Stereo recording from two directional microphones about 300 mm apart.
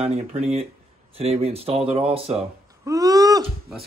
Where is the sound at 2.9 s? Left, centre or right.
Centre.